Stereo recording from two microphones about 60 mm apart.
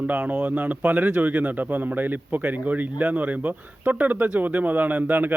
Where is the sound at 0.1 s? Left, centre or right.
Right.